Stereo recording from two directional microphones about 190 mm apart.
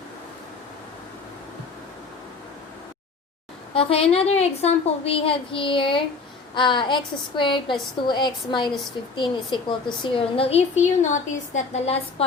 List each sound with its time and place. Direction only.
3.8 s a woman's voice: 30° left (ahead or behind)